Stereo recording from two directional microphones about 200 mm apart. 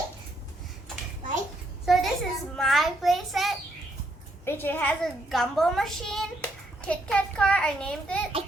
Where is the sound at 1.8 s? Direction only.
Centre (ahead or behind).